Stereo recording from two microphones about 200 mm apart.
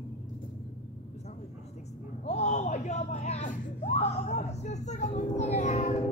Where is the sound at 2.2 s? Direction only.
35° left (ahead or behind).